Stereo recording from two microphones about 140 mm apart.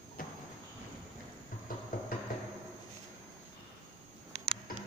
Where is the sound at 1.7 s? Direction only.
90° left.